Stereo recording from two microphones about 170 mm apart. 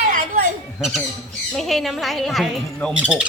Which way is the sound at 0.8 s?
Centre (ahead or behind).